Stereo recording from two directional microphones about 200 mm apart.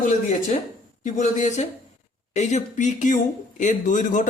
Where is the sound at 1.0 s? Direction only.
40° left (ahead or behind).